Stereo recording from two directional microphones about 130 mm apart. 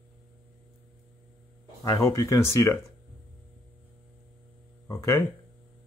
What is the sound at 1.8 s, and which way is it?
Speech, 25° left (ahead or behind).